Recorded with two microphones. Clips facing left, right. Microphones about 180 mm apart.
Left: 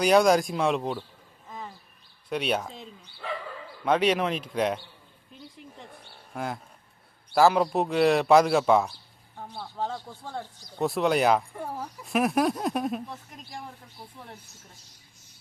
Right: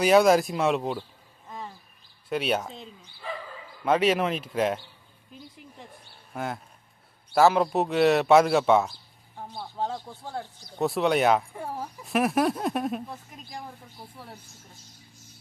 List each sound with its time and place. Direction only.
0.0 s speech: centre (ahead or behind)
2.3 s speech: centre (ahead or behind)
3.8 s speech: centre (ahead or behind)
6.3 s speech: centre (ahead or behind)